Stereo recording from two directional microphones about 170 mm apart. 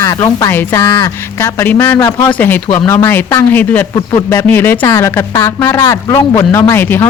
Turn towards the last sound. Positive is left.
turn(degrees=15)  # may be behind; listen again after turning